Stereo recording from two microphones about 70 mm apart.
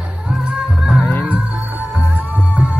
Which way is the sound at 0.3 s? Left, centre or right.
Centre.